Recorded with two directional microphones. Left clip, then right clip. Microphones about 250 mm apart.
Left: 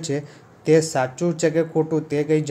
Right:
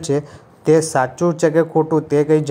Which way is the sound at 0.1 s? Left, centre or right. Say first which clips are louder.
Right 7 dB; centre.